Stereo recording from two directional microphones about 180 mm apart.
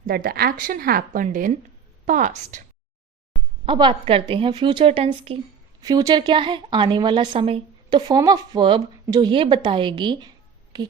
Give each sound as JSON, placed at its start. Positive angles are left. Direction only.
{"t": 0.0, "sound": "speech", "side_deg": -55}
{"t": 3.7, "sound": "a woman's voice", "side_deg": -30}
{"t": 5.8, "sound": "a woman's voice", "side_deg": -20}